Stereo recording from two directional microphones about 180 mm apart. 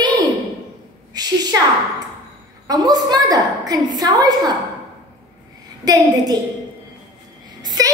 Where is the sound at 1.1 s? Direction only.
20° right (ahead or behind).